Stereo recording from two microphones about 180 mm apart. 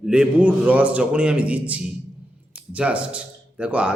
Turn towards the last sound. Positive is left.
turn(degrees=-5)  # may be behind; listen again after turning